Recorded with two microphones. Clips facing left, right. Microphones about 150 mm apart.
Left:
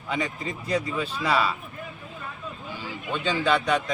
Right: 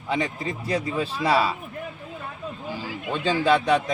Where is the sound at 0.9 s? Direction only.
35° right (ahead or behind).